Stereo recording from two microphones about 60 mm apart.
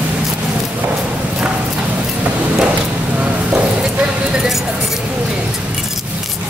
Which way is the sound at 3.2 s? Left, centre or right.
Right.